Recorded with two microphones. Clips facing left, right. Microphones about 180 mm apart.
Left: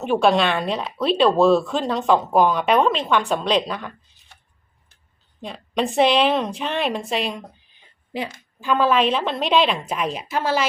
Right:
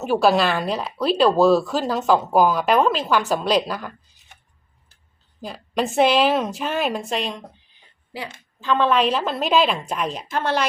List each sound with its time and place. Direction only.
0.0 s speech: 5° right (ahead or behind)
5.4 s speech: centre (ahead or behind)
8.1 s a woman's voice: 20° left (ahead or behind)
8.6 s speech: 10° left (ahead or behind)